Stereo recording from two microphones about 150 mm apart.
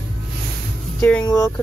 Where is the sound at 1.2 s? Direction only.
25° left (ahead or behind).